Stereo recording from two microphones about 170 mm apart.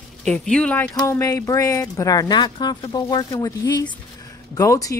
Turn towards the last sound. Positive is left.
turn(degrees=20)  # may be behind; listen again after turning